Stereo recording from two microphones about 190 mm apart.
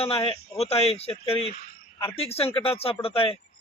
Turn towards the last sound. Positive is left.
turn(degrees=30)  # may be behind; listen again after turning